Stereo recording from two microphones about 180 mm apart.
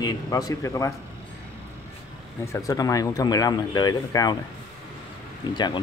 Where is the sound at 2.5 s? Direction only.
20° left (ahead or behind).